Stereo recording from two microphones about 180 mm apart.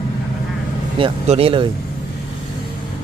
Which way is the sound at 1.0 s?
35° right (ahead or behind).